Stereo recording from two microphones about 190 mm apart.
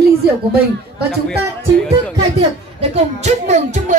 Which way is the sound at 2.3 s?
35° right (ahead or behind).